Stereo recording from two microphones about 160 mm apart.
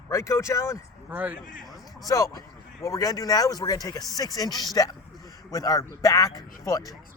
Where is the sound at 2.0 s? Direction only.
20° left (ahead or behind).